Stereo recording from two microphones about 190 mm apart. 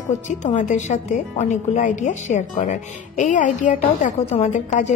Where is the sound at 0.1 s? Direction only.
40° left (ahead or behind).